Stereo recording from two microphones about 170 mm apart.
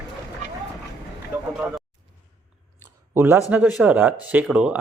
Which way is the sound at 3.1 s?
15° right (ahead or behind).